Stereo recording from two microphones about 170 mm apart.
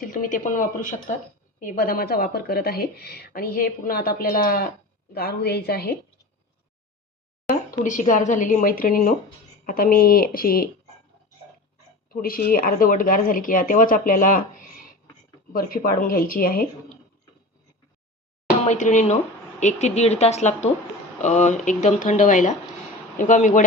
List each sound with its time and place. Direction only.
0.0 s a woman's voice: 50° left (ahead or behind)
7.4 s speech: 50° left (ahead or behind)
12.0 s speech: 60° left (ahead or behind)
18.6 s speech: 45° left (ahead or behind)